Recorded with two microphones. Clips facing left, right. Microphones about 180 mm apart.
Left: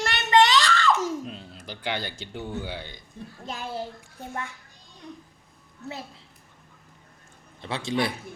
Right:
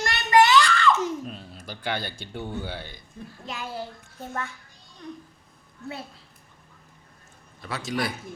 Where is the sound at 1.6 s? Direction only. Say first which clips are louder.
Right 1 dB; 15° left (ahead or behind).